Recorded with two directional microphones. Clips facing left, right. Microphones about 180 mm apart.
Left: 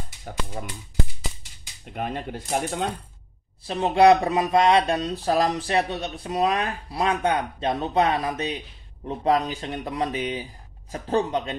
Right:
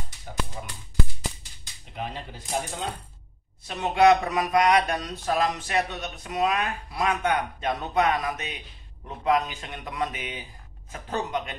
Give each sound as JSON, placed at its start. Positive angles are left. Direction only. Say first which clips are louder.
{"t": 0.6, "sound": "speech", "louder": "left 5 dB", "side_deg": 55}
{"t": 1.9, "sound": "speech", "louder": "left 5 dB", "side_deg": 55}
{"t": 3.6, "sound": "speech", "louder": "left 3 dB", "side_deg": 30}